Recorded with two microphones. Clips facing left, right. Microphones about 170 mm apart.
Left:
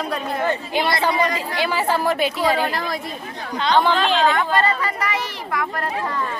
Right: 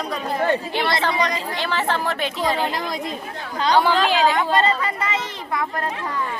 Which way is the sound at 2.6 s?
20° right (ahead or behind).